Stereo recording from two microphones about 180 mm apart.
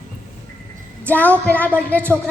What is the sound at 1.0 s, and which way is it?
Speech, 10° left (ahead or behind).